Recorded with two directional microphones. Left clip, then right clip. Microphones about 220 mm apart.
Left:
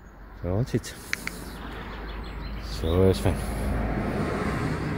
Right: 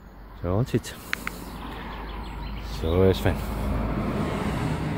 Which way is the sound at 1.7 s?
45° right (ahead or behind).